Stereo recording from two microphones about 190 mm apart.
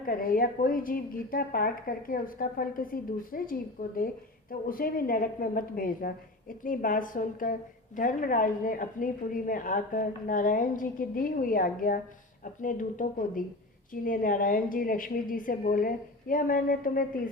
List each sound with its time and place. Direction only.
0.0 s a woman's voice: 50° left (ahead or behind)